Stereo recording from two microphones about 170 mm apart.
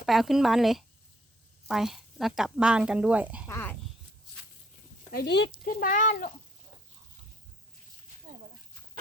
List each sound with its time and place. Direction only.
0.0 s speech: centre (ahead or behind)
3.4 s speech: 15° left (ahead or behind)
5.1 s speech: 80° left
5.8 s speech: 50° left (ahead or behind)